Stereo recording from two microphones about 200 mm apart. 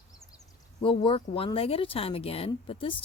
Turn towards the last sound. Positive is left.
turn(degrees=25)  # may be behind; listen again after turning